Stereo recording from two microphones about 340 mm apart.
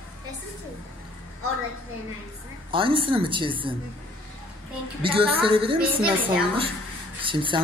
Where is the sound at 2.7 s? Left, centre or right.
Centre.